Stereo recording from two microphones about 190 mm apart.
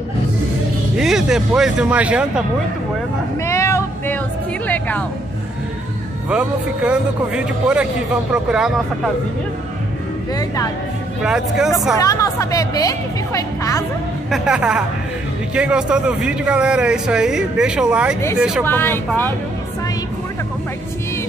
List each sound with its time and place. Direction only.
0.9 s speech: centre (ahead or behind)
3.4 s a sound: 15° left (ahead or behind)
4.6 s music: 10° left (ahead or behind)
6.2 s speech: 5° right (ahead or behind)
10.3 s speech: 20° left (ahead or behind)
11.2 s speech: 5° right (ahead or behind)
12.0 s speech: 15° left (ahead or behind)
14.3 s speech: 5° right (ahead or behind)
18.7 s speech: 10° left (ahead or behind)